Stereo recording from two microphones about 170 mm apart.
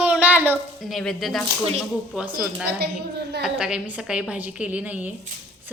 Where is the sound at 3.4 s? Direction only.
5° right (ahead or behind).